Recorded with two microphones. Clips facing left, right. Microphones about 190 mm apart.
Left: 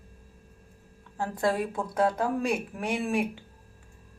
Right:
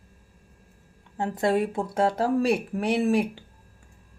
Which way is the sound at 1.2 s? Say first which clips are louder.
Right 4 dB; 25° right (ahead or behind).